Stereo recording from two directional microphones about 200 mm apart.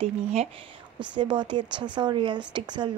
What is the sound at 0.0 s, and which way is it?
A woman's voice, 30° right (ahead or behind).